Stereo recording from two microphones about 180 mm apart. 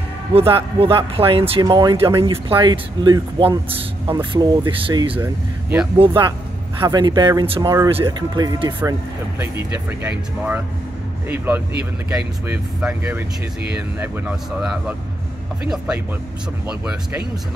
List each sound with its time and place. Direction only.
0.3 s speech: 30° right (ahead or behind)
5.1 s speech: 10° right (ahead or behind)
5.9 s speech: 25° right (ahead or behind); by 16.0 s 5° right (ahead or behind)